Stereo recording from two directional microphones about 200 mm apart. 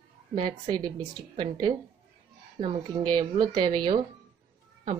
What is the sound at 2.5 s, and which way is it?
A woman's voice, 30° right (ahead or behind).